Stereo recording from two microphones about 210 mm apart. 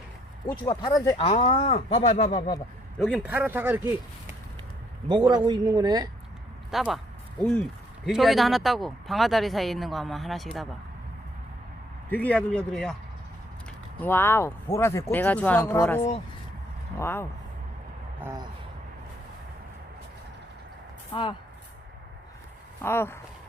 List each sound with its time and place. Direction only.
0.7 s speech: 20° left (ahead or behind)
3.0 s speech: 5° right (ahead or behind)
5.5 s speech: 20° right (ahead or behind)
6.7 s speech: centre (ahead or behind)
12.0 s speech: 10° left (ahead or behind)
18.2 s a sound: 15° right (ahead or behind)
21.1 s speech: 25° left (ahead or behind)
22.8 s speech: 10° left (ahead or behind)